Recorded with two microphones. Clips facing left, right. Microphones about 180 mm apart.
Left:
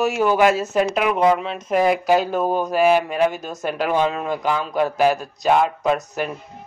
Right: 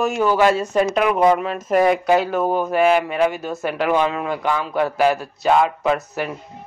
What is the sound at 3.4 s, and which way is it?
A woman's voice, 20° left (ahead or behind).